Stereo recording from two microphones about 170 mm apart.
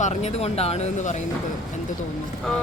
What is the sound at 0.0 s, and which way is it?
Speech, 40° left (ahead or behind).